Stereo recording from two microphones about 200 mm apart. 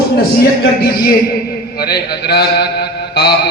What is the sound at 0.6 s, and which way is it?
A man's voice, 55° left (ahead or behind).